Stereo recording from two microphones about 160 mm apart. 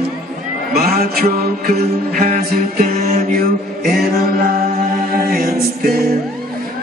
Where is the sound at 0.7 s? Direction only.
70° right (ahead or behind).